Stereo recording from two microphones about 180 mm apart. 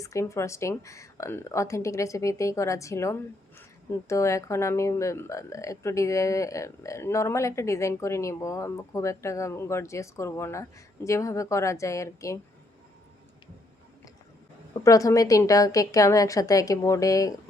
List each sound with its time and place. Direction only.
0.0 s speech: 15° left (ahead or behind)
14.7 s a woman's voice: 20° left (ahead or behind)